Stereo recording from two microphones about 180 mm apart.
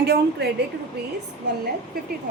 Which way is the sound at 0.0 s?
65° right (ahead or behind).